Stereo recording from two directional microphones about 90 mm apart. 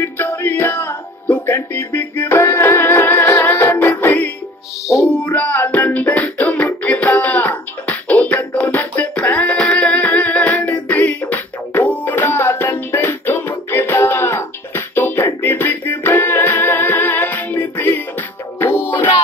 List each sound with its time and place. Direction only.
0.0 s music: 25° left (ahead or behind)